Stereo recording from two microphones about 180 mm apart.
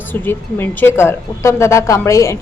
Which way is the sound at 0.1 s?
10° left (ahead or behind).